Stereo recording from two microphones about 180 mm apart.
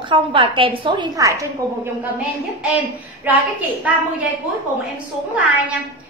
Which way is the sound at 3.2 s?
10° right (ahead or behind).